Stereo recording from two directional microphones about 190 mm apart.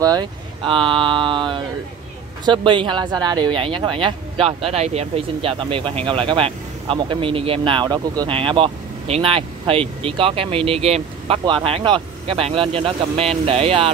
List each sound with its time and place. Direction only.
0.0 s speech: 20° right (ahead or behind)